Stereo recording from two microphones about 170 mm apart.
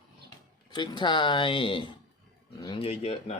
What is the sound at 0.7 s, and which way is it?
Speech, 25° left (ahead or behind).